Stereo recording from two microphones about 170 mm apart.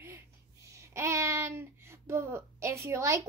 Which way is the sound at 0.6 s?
15° right (ahead or behind).